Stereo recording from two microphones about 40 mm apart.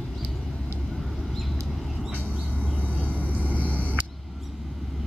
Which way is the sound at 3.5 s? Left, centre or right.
Left.